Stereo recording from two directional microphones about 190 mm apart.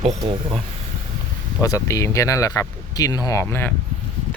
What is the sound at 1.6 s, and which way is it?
Speech, 15° left (ahead or behind).